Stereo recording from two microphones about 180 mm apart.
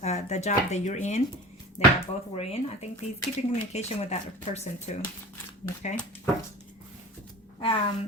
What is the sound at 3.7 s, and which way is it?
A woman's voice, 35° left (ahead or behind).